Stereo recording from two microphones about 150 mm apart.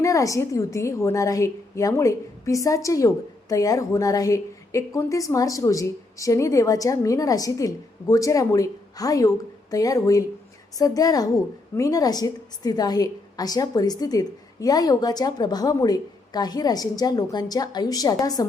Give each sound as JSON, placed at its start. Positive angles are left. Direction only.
{"t": 0.0, "sound": "a woman's voice", "side_deg": 20}